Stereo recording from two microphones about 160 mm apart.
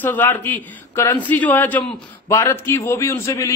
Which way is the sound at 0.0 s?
10° left (ahead or behind).